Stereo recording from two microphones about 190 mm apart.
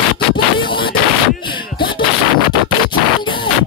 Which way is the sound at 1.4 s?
25° left (ahead or behind).